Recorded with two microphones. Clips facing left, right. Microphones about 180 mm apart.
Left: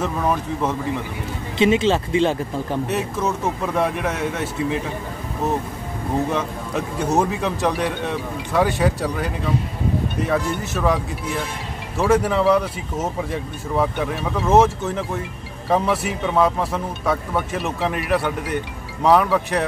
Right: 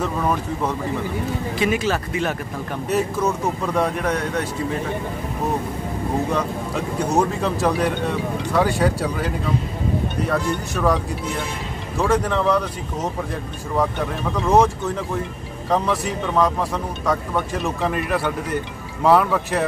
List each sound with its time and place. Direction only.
0.2 s a man's voice: centre (ahead or behind)
1.6 s speech: 25° left (ahead or behind)
2.9 s a man's voice: centre (ahead or behind)
7.1 s a man's voice: 5° left (ahead or behind)
12.0 s a man's voice: 5° left (ahead or behind)